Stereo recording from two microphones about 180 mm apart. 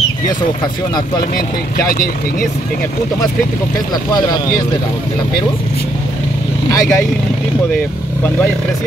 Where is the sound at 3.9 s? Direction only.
25° left (ahead or behind).